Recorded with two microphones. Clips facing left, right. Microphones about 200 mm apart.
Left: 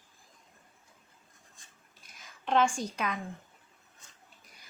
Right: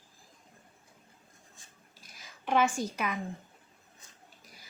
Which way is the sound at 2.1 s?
5° right (ahead or behind).